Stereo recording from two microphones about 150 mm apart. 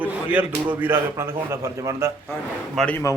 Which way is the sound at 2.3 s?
5° left (ahead or behind).